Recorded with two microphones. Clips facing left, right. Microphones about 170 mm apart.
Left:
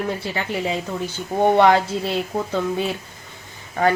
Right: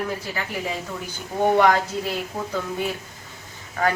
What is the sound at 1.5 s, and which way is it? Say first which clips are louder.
A woman's voice: left 3 dB; 30° left (ahead or behind).